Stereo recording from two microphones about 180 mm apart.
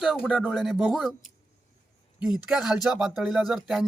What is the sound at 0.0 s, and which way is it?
A man's voice, 5° right (ahead or behind).